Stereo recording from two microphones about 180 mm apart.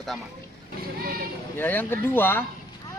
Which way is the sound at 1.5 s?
10° left (ahead or behind).